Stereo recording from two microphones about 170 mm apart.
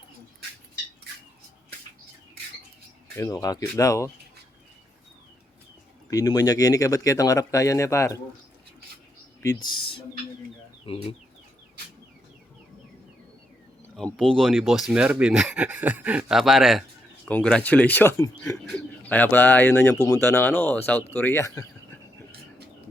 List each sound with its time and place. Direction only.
3.2 s speech: 20° left (ahead or behind)
6.1 s speech: 20° left (ahead or behind)
9.4 s speech: 20° left (ahead or behind)
13.9 s speech: 5° left (ahead or behind)